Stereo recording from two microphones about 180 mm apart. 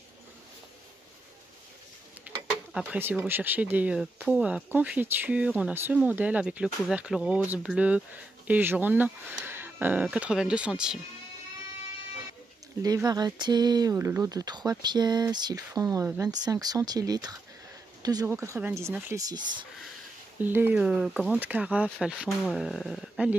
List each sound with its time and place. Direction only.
2.2 s speech: 10° right (ahead or behind)
12.8 s speech: 20° right (ahead or behind)
20.4 s speech: 10° right (ahead or behind)